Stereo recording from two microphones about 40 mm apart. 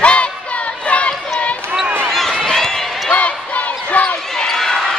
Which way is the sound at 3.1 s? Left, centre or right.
Left.